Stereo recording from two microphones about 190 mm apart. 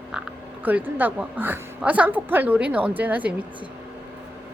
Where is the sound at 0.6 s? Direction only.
10° right (ahead or behind).